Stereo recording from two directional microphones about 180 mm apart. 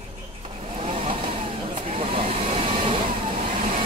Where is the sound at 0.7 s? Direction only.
30° right (ahead or behind).